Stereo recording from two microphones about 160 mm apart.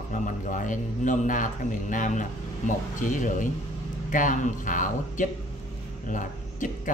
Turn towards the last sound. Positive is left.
turn(degrees=55)  # may be behind; listen again after turning